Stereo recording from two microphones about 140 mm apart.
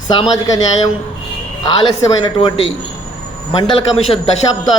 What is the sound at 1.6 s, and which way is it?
Speech, 35° left (ahead or behind).